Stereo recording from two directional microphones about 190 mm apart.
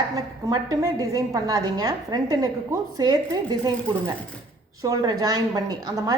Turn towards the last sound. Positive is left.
turn(degrees=-20)  # may be behind; listen again after turning